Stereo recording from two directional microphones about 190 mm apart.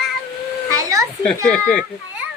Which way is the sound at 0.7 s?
15° right (ahead or behind).